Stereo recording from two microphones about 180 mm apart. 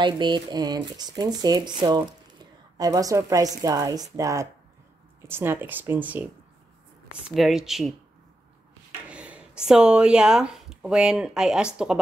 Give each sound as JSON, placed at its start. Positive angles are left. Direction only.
{"t": 0.0, "sound": "speech", "side_deg": -25}
{"t": 9.1, "sound": "speech", "side_deg": -5}